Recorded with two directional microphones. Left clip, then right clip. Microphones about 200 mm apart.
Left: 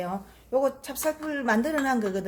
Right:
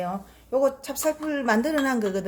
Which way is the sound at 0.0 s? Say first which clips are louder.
Right 2 dB; centre (ahead or behind).